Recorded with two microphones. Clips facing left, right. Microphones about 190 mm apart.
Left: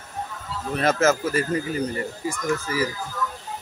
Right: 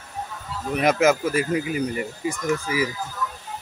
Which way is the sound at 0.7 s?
15° right (ahead or behind).